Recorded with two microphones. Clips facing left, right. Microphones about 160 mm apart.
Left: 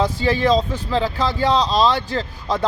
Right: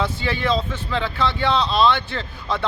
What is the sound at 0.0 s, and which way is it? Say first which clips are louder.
A man's voice: left 5 dB; 35° left (ahead or behind).